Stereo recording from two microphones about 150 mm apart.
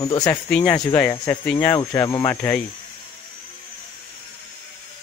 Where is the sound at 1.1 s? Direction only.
25° left (ahead or behind).